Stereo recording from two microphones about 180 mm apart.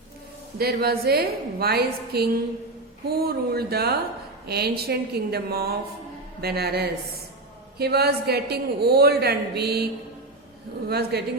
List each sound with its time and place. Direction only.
0.6 s a man's voice: 60° right (ahead or behind)